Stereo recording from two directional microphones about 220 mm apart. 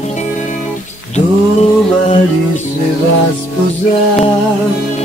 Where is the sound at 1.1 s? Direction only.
30° left (ahead or behind).